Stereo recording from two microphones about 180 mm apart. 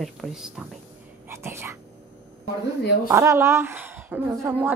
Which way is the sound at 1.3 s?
15° right (ahead or behind).